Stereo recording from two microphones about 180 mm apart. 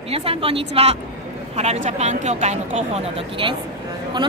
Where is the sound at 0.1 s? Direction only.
35° right (ahead or behind).